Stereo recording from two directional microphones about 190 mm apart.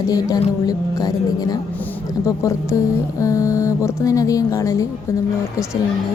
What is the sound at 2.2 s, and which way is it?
Mantra, 15° left (ahead or behind).